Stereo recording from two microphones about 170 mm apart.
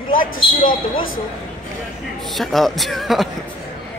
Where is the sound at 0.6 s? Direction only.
55° left (ahead or behind).